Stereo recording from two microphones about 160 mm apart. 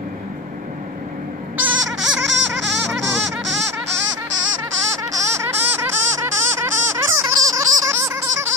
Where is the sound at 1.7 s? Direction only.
5° right (ahead or behind).